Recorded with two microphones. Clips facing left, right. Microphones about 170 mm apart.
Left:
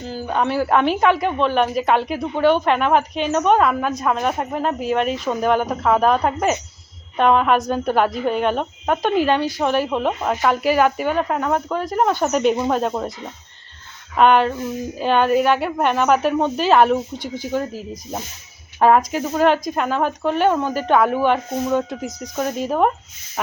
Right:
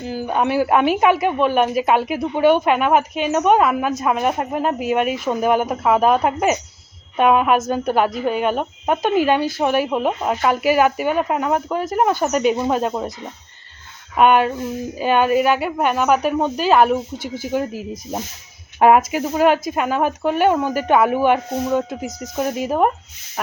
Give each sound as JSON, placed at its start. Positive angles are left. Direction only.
{"t": 0.0, "sound": "a woman's voice", "side_deg": -15}
{"t": 14.2, "sound": "a woman's voice", "side_deg": -5}